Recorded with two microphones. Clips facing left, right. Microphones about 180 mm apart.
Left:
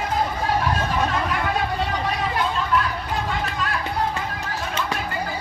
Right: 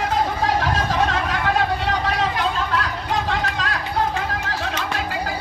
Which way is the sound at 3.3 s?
90° right.